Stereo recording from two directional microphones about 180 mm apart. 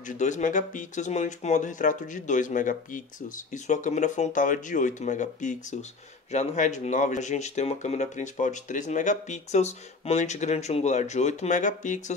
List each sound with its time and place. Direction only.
0.1 s speech: 45° left (ahead or behind)